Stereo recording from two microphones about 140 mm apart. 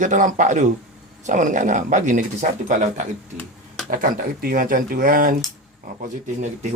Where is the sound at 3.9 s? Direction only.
90° right.